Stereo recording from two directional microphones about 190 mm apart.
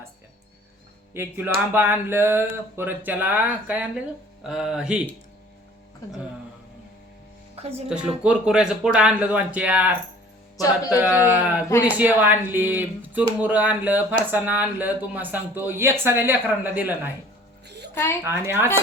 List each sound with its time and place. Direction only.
1.1 s speech: 10° right (ahead or behind)
7.6 s speech: 30° right (ahead or behind)
7.9 s speech: 5° right (ahead or behind)
17.7 s music: 60° right (ahead or behind)
17.9 s speech: 15° left (ahead or behind)
18.3 s speech: 10° right (ahead or behind)